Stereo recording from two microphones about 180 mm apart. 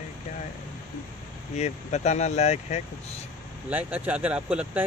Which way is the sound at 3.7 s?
10° right (ahead or behind).